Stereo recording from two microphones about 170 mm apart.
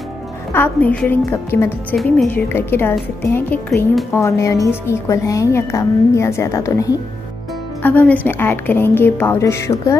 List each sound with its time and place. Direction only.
0.5 s a woman's voice: 10° left (ahead or behind)